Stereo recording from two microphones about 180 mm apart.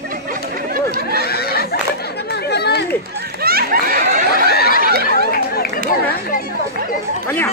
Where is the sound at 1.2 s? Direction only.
60° left (ahead or behind).